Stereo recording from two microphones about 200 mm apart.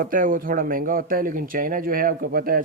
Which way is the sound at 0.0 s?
45° right (ahead or behind).